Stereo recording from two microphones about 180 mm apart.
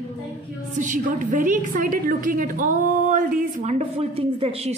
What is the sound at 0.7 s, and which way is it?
A woman's voice, 45° right (ahead or behind).